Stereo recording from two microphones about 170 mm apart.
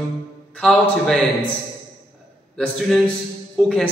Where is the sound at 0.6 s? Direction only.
Centre (ahead or behind).